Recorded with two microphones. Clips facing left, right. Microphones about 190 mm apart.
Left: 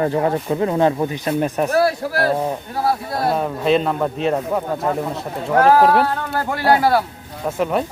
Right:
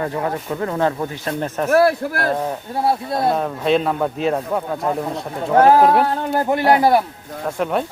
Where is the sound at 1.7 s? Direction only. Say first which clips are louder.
Right 7 dB; 55° right (ahead or behind).